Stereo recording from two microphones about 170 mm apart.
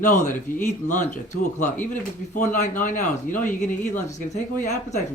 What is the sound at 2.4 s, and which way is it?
Speech, 45° left (ahead or behind).